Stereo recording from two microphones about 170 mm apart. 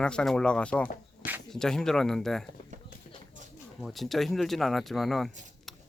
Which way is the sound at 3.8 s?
Centre (ahead or behind).